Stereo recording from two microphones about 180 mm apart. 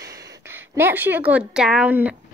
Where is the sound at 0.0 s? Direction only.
20° right (ahead or behind).